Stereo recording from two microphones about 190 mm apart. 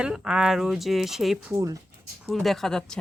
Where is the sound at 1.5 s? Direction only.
15° right (ahead or behind).